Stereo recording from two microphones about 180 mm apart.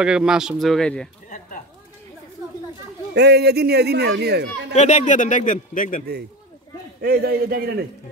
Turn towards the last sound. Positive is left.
turn(degrees=-60)  # may be behind; listen again after turning